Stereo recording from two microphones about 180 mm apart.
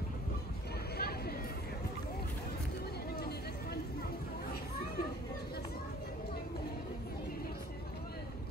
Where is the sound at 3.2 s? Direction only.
60° left (ahead or behind).